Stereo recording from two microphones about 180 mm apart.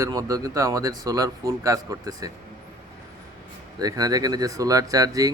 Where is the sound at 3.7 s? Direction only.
20° right (ahead or behind).